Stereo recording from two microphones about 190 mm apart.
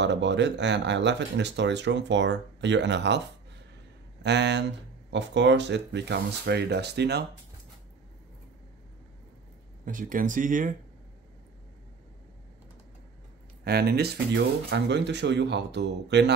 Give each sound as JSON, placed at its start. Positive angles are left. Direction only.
{"t": 0.0, "sound": "speech", "side_deg": -70}
{"t": 4.2, "sound": "speech", "side_deg": -65}
{"t": 9.8, "sound": "speech", "side_deg": -45}
{"t": 13.7, "sound": "speech", "side_deg": -55}